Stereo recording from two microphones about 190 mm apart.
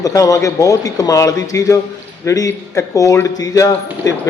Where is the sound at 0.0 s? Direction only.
20° left (ahead or behind).